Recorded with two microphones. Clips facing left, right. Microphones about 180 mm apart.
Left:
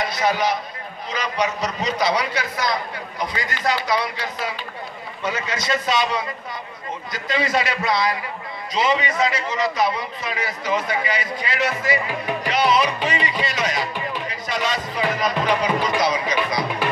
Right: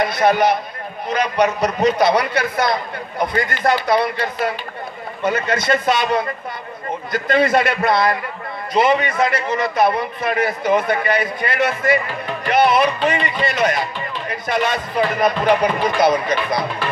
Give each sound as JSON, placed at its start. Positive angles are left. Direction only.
{"t": 0.0, "sound": "a man's voice", "side_deg": -55}